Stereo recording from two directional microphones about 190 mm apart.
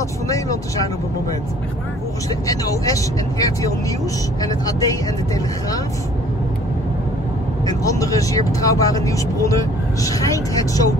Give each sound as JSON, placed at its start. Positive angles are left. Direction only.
{"t": 2.4, "sound": "speech", "side_deg": 20}
{"t": 7.6, "sound": "speech", "side_deg": 20}